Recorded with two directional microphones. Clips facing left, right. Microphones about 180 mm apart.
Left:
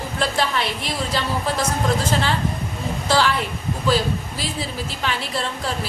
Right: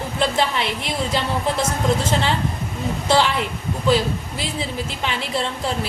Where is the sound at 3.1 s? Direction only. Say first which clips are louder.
Right 1 dB; 25° right (ahead or behind).